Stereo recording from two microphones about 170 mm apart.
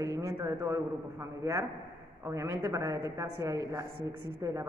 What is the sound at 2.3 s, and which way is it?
A woman's voice, 15° right (ahead or behind).